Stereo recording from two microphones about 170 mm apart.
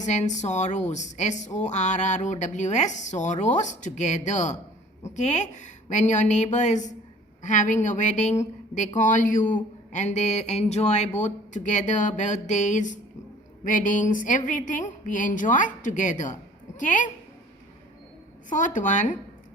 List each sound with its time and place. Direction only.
0.0 s a woman's voice: 45° left (ahead or behind)
18.4 s a woman's voice: 50° left (ahead or behind)